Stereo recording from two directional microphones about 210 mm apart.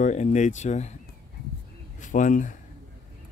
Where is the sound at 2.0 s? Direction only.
40° left (ahead or behind).